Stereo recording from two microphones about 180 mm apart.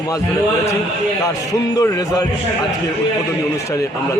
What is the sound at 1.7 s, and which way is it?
Speech, 20° left (ahead or behind).